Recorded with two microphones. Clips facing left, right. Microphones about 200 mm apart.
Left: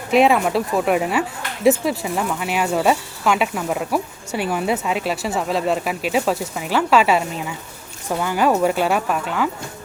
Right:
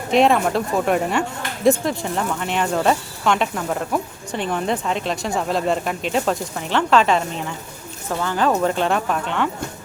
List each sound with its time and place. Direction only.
0.1 s speech: 5° left (ahead or behind)